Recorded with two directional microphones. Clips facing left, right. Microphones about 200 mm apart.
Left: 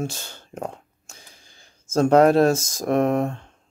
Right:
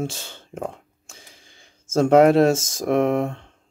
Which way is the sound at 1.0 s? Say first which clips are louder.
Right 2 dB; 25° right (ahead or behind).